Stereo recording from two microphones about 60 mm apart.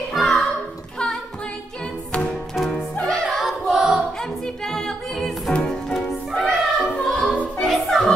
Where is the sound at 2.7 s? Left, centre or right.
Centre.